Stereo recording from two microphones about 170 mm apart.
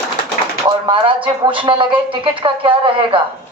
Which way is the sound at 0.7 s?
30° right (ahead or behind).